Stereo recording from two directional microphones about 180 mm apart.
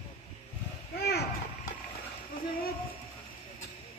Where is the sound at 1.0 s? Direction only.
65° left (ahead or behind).